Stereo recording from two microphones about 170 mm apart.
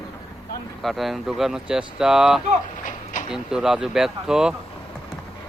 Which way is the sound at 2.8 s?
50° left (ahead or behind).